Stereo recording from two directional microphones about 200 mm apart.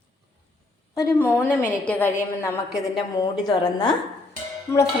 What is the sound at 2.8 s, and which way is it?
Speech, 20° left (ahead or behind).